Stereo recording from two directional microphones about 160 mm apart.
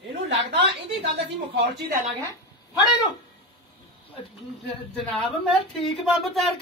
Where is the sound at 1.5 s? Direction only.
90° right.